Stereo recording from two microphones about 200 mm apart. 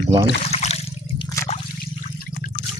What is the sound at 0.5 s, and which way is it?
Toilet flush, 30° left (ahead or behind).